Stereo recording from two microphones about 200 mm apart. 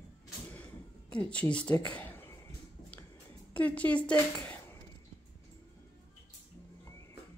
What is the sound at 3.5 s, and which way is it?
Speech, 5° left (ahead or behind).